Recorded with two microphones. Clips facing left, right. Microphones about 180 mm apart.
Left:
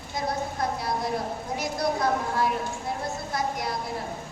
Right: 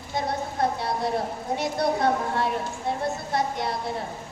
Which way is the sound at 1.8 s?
25° right (ahead or behind).